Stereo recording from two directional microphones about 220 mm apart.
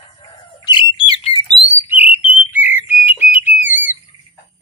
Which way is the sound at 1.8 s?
10° right (ahead or behind).